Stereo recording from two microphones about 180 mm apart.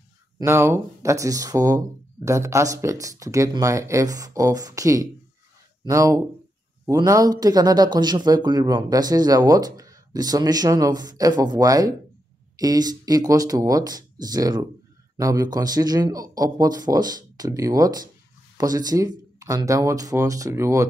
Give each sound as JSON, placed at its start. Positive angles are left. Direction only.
{"t": 0.4, "sound": "speech", "side_deg": -15}